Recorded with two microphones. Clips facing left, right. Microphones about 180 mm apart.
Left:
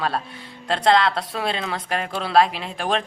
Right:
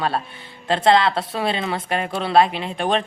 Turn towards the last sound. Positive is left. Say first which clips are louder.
# right 3 dB
turn(degrees=0)  # may be behind; listen again after turning